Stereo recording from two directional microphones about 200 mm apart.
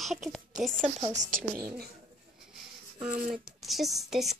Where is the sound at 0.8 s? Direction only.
35° right (ahead or behind).